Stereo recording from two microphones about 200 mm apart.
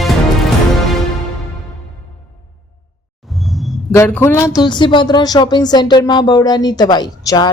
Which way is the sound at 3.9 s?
10° left (ahead or behind).